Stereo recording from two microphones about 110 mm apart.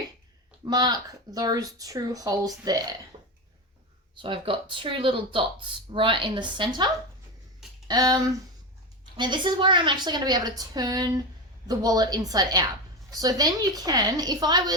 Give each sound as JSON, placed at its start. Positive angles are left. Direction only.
{"t": 0.6, "sound": "speech", "side_deg": -35}
{"t": 3.1, "sound": "cough", "side_deg": -90}
{"t": 4.2, "sound": "speech", "side_deg": -50}